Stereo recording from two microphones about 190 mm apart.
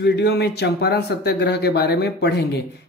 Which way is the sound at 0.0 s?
65° left (ahead or behind).